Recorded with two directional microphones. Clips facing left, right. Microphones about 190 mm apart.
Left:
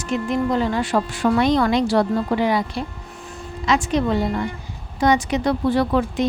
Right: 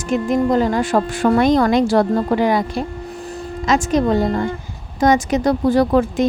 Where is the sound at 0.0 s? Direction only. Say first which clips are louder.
Right 4 dB; 45° right (ahead or behind).